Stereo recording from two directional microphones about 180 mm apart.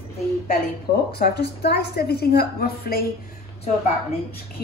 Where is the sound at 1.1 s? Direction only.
65° left (ahead or behind).